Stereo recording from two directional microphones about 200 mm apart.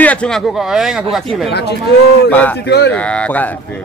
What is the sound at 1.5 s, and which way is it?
Speech, 55° left (ahead or behind).